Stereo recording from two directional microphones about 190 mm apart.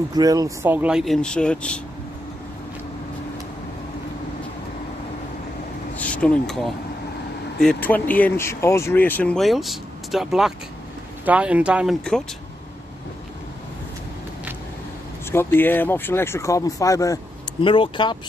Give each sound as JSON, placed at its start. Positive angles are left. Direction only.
{"t": 0.1, "sound": "speech", "side_deg": -20}
{"t": 5.9, "sound": "speech", "side_deg": 5}
{"t": 15.3, "sound": "speech", "side_deg": 10}